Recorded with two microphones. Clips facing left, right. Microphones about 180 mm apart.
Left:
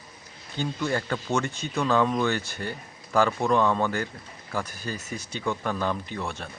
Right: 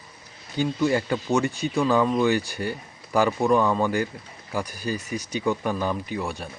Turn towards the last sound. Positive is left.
turn(degrees=-15)  # may be behind; listen again after turning